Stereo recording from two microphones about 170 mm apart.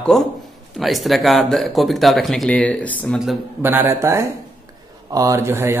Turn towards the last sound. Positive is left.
turn(degrees=-15)  # may be behind; listen again after turning